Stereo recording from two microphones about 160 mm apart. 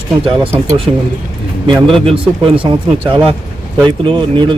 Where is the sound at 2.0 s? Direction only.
35° right (ahead or behind).